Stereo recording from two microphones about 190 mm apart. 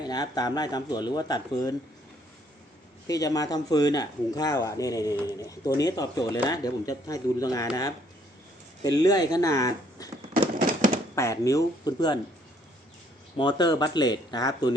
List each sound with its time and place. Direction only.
0.0 s speech: 20° left (ahead or behind)
3.1 s speech: 20° left (ahead or behind)
8.8 s speech: 20° left (ahead or behind)
11.1 s speech: 15° left (ahead or behind)
13.3 s speech: 25° left (ahead or behind)